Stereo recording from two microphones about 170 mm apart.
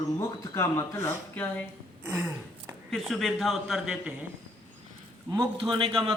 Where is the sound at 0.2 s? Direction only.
15° left (ahead or behind).